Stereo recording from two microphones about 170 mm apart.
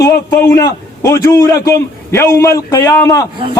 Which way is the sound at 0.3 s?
15° left (ahead or behind).